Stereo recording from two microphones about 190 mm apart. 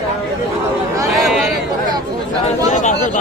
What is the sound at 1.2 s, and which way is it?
Speech, centre (ahead or behind).